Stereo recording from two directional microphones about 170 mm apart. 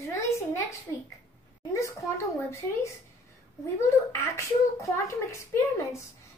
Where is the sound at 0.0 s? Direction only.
15° left (ahead or behind).